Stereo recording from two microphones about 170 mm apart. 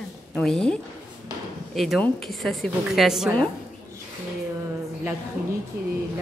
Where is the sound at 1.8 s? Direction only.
Centre (ahead or behind).